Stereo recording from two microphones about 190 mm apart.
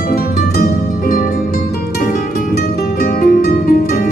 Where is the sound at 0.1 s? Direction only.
50° left (ahead or behind).